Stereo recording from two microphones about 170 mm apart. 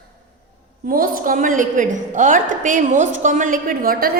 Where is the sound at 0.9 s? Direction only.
55° right (ahead or behind).